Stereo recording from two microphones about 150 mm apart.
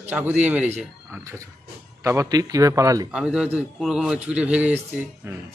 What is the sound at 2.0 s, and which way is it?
A man's voice, 20° right (ahead or behind).